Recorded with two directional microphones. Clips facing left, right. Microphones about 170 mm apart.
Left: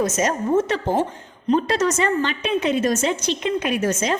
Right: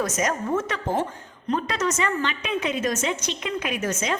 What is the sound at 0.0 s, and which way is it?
A woman's voice, 25° left (ahead or behind).